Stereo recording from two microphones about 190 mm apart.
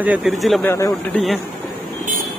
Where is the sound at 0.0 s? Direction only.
5° right (ahead or behind).